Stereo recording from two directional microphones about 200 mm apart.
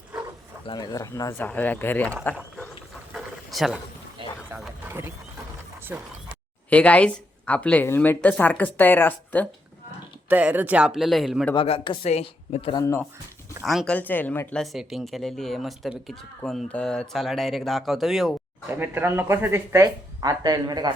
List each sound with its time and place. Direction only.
0.6 s speech: 20° left (ahead or behind)
3.1 s a sound: centre (ahead or behind)
4.2 s a sound: 25° right (ahead or behind)
4.5 s wild animals: 10° right (ahead or behind)
5.9 s speech: 10° right (ahead or behind)
6.7 s speech: 5° left (ahead or behind)
10.2 s speech: 10° right (ahead or behind)
11.5 s speech: 25° left (ahead or behind)
12.8 s speech: 15° left (ahead or behind)
13.7 s speech: 5° left (ahead or behind); by 20.9 s 20° right (ahead or behind)